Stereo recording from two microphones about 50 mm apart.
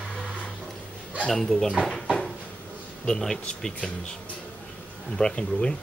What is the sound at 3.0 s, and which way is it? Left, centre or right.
Speech, centre.